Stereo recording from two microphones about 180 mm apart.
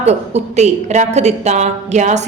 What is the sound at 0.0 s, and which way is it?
A woman's voice, 35° right (ahead or behind).